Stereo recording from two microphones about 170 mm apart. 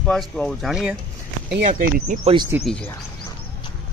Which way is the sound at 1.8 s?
55° right (ahead or behind).